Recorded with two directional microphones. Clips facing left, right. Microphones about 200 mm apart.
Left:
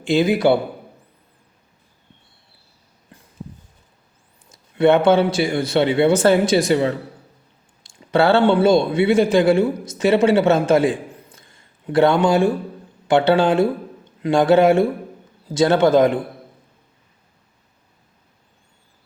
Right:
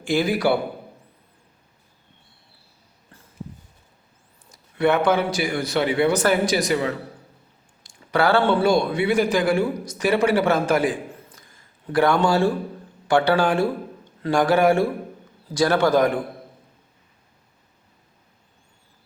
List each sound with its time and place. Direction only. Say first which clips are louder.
0.0 s a man's voice: left 4 dB; 20° left (ahead or behind)
3.1 s a sound: left 4 dB; 15° left (ahead or behind)
4.5 s a man's voice: left 5 dB; 25° left (ahead or behind)